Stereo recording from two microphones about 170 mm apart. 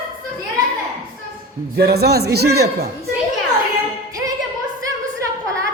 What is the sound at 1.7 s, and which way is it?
A man's voice, 70° right (ahead or behind).